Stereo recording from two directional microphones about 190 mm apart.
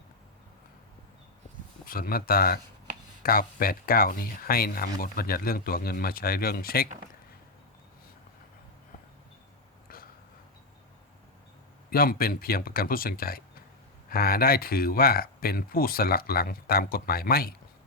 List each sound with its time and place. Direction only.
1.8 s speech: 50° left (ahead or behind)
9.9 s a sound: 50° left (ahead or behind)
11.9 s speech: 50° left (ahead or behind)